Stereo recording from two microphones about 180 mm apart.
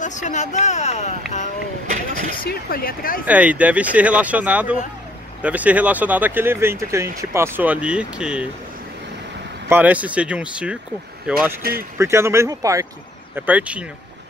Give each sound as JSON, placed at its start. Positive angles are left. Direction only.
{"t": 0.0, "sound": "speech", "side_deg": 45}
{"t": 1.9, "sound": "vehicle", "side_deg": -40}
{"t": 2.3, "sound": "speech", "side_deg": 55}
{"t": 3.3, "sound": "speech", "side_deg": -10}
{"t": 9.7, "sound": "speech", "side_deg": -10}
{"t": 13.5, "sound": "speech", "side_deg": -5}